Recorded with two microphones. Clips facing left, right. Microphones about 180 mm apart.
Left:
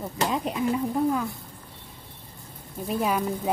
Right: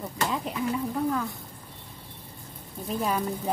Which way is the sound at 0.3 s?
20° left (ahead or behind).